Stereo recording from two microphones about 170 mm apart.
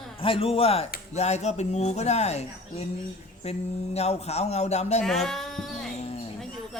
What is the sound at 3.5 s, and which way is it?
Speech, 40° left (ahead or behind).